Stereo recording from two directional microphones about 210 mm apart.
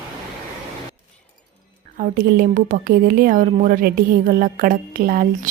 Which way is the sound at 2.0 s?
45° right (ahead or behind).